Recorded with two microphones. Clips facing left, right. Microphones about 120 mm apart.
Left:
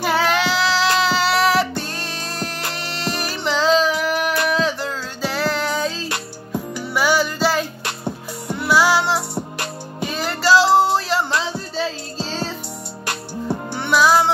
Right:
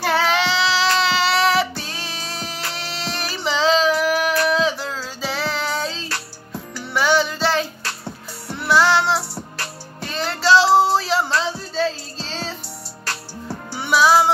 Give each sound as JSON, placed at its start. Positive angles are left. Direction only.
{"t": 0.0, "sound": "child singing", "side_deg": 0}
{"t": 1.8, "sound": "music", "side_deg": 0}
{"t": 6.0, "sound": "music", "side_deg": 20}
{"t": 6.8, "sound": "music", "side_deg": 5}
{"t": 7.8, "sound": "music", "side_deg": 20}
{"t": 8.5, "sound": "music", "side_deg": 5}
{"t": 9.3, "sound": "music", "side_deg": 15}
{"t": 13.0, "sound": "music", "side_deg": 20}
{"t": 13.7, "sound": "music", "side_deg": -5}